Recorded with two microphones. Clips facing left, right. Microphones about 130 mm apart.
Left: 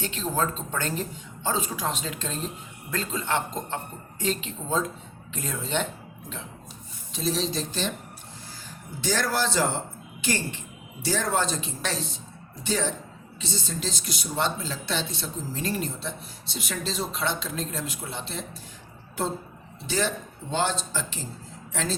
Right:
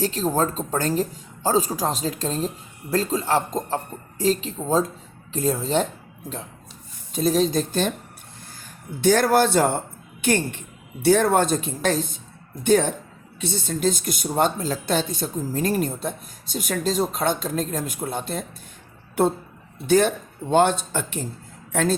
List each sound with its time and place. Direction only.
0.0 s speech: 40° right (ahead or behind)
7.1 s speech: 50° right (ahead or behind)
9.0 s speech: 55° right (ahead or behind)
19.2 s speech: 60° right (ahead or behind)